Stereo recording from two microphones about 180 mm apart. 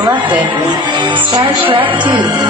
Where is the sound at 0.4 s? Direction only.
25° right (ahead or behind).